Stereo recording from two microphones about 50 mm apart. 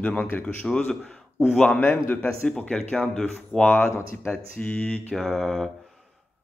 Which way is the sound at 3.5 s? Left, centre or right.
Right.